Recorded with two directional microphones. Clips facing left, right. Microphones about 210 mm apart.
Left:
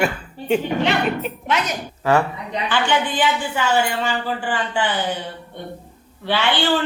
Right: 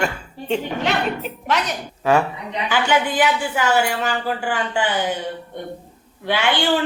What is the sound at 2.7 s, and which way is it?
A woman's voice, 10° right (ahead or behind).